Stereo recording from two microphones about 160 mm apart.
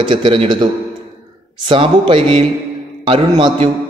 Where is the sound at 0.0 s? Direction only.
30° right (ahead or behind).